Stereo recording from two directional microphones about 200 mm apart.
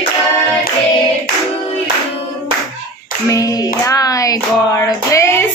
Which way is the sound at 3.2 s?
15° left (ahead or behind).